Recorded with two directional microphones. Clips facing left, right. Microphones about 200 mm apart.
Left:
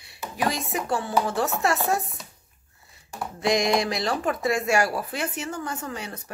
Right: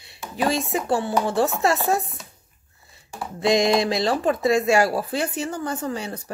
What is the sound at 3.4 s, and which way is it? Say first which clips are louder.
A woman's voice: right 4 dB; 25° right (ahead or behind).